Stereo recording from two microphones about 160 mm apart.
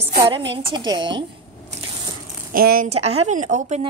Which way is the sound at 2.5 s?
65° right (ahead or behind).